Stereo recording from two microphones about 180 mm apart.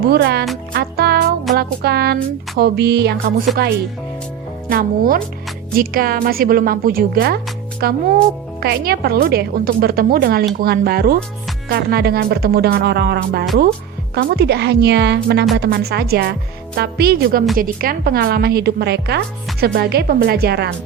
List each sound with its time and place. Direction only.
0.1 s a woman's voice: 65° right (ahead or behind)
0.7 s music: 60° right (ahead or behind)
2.6 s a woman's voice: 60° right (ahead or behind)
3.3 s music: 50° right (ahead or behind)
4.7 s a woman's voice: 55° right (ahead or behind)